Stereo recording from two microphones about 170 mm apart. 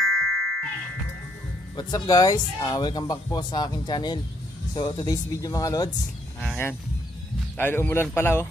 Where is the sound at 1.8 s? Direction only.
25° left (ahead or behind).